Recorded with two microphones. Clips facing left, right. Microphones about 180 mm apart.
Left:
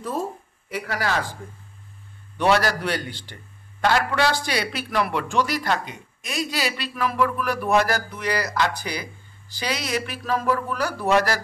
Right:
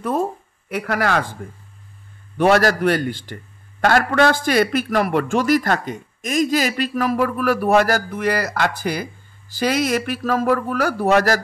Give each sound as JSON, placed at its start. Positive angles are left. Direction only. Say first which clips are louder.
{"t": 0.0, "sound": "speech", "louder": "right 6 dB", "side_deg": -60}
{"t": 2.3, "sound": "a man's voice", "louder": "right 5 dB", "side_deg": -50}